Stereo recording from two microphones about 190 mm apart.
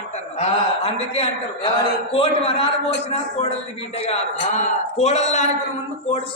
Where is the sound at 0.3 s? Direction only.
30° left (ahead or behind).